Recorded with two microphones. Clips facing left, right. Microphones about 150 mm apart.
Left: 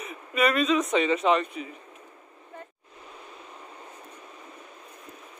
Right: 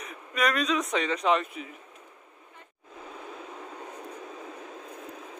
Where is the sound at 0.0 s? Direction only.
5° left (ahead or behind).